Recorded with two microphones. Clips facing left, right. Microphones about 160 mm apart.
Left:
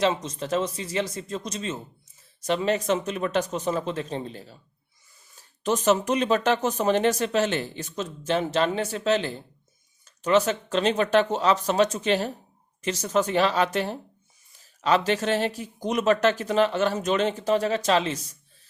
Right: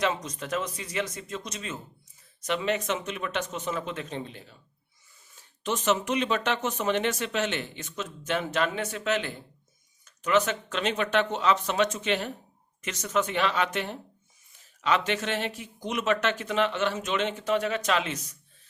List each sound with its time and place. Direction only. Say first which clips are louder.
0.0 s speech: left 4 dB; 25° left (ahead or behind)